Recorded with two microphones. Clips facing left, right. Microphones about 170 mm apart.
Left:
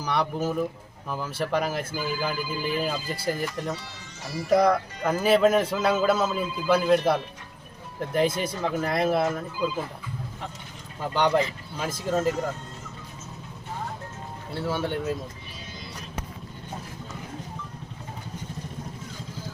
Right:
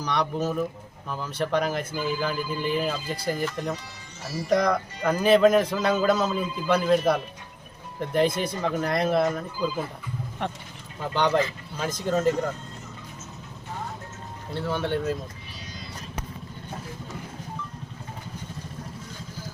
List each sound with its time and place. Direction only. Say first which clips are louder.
0.0 s speech: even; 5° left (ahead or behind)
10.4 s speech: right 9 dB; 70° right (ahead or behind)
11.0 s speech: even; 10° left (ahead or behind)
14.7 s speech: right 1 dB; 5° left (ahead or behind)